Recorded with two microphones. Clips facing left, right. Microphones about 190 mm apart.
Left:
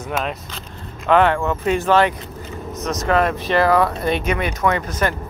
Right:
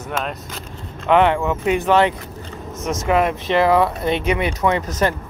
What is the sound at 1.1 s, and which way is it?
Speech, 20° right (ahead or behind).